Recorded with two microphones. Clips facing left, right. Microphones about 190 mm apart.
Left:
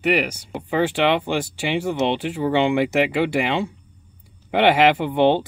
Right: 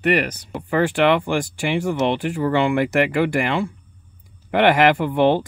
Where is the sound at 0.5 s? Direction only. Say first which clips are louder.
Right 2 dB; 20° left (ahead or behind).